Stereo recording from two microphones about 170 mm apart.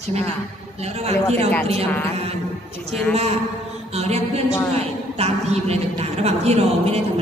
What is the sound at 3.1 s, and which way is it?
A woman's voice, 40° right (ahead or behind).